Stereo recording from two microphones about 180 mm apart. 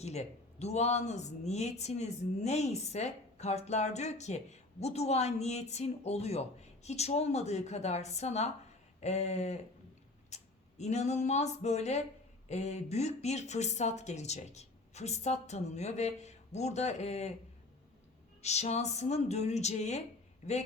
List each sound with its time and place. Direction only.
0.0 s speech: 35° left (ahead or behind)
18.4 s speech: 35° left (ahead or behind)